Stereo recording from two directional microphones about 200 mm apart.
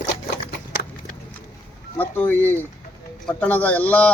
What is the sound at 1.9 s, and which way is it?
A man's voice, 10° left (ahead or behind).